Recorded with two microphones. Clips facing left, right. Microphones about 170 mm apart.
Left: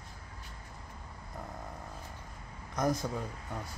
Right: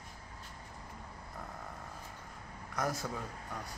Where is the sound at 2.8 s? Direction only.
15° left (ahead or behind).